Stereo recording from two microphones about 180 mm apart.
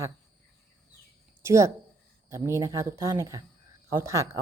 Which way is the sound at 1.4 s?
15° right (ahead or behind).